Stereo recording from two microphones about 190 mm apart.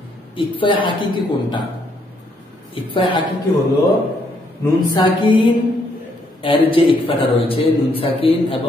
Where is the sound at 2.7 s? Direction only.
25° left (ahead or behind).